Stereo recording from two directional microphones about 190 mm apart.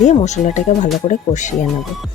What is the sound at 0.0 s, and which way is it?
Speech, 35° left (ahead or behind).